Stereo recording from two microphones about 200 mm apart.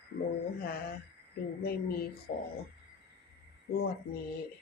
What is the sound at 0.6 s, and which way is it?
Speech, 50° left (ahead or behind).